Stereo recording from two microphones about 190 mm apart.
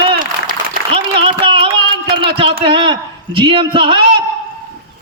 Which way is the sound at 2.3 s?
30° right (ahead or behind).